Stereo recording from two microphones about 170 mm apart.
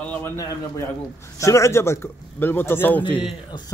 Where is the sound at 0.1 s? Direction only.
15° left (ahead or behind).